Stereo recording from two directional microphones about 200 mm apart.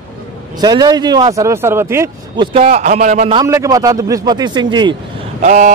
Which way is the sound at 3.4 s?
15° right (ahead or behind).